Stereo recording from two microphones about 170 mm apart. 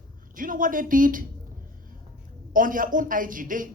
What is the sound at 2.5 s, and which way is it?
Speech, 55° right (ahead or behind).